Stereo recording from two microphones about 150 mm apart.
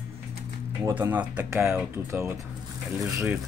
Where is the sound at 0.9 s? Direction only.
10° right (ahead or behind).